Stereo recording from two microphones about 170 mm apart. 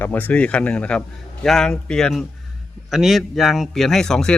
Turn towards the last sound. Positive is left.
turn(degrees=5)  # may be behind; listen again after turning